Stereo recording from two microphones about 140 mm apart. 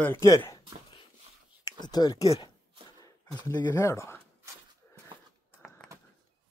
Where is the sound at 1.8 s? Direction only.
30° left (ahead or behind).